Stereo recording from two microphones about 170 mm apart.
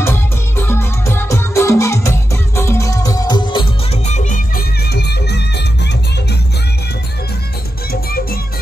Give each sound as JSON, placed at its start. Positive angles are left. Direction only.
{"t": 0.0, "sound": "music", "side_deg": 15}
{"t": 4.1, "sound": "music", "side_deg": 50}
{"t": 4.8, "sound": "music", "side_deg": 75}
{"t": 7.9, "sound": "music", "side_deg": 60}